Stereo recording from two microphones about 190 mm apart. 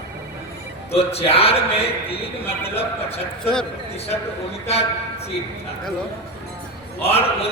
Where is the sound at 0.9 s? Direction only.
30° left (ahead or behind).